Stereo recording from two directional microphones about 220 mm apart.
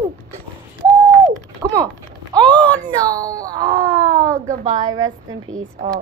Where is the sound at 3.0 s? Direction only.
15° right (ahead or behind).